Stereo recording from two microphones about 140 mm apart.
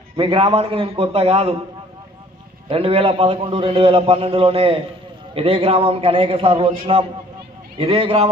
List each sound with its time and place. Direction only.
0.1 s a man's voice: 40° right (ahead or behind)
2.7 s a man's voice: 40° right (ahead or behind)